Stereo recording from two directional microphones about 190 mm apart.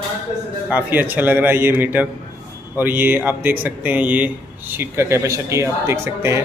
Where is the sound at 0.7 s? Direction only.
10° right (ahead or behind).